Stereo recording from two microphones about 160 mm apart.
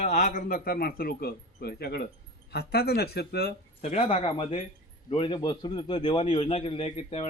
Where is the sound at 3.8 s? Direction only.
45° left (ahead or behind).